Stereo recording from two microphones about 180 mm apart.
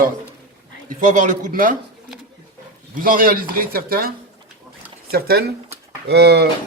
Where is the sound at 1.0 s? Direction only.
45° right (ahead or behind).